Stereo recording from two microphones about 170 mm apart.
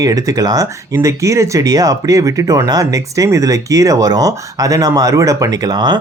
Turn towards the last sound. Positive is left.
turn(degrees=-25)  # may be behind; listen again after turning